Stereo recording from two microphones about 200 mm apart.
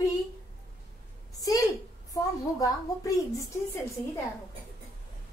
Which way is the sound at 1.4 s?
15° left (ahead or behind).